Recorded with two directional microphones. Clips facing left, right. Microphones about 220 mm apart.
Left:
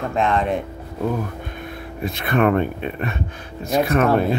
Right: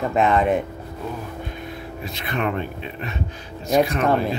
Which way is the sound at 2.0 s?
55° left (ahead or behind).